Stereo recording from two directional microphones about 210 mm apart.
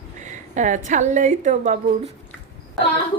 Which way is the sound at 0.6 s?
35° right (ahead or behind).